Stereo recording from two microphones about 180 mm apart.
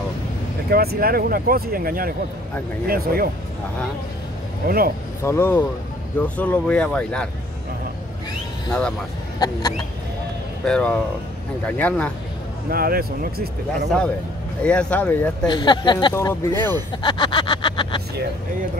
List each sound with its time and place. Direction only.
0.7 s speech: 55° right (ahead or behind)
4.6 s speech: 55° right (ahead or behind)
5.2 s speech: 15° left (ahead or behind)
9.4 s speech: 20° left (ahead or behind)
10.6 s speech: 5° left (ahead or behind)
12.6 s speech: 55° right (ahead or behind)
14.6 s speech: 5° left (ahead or behind)
15.4 s speech: 25° left (ahead or behind)
16.2 s speech: 15° left (ahead or behind)
17.0 s vehicle: 25° left (ahead or behind)